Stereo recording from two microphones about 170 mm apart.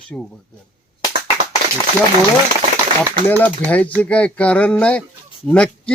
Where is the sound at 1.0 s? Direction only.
25° left (ahead or behind).